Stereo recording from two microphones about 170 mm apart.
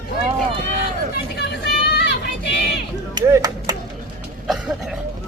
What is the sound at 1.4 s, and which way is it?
Vehicle, 70° left (ahead or behind).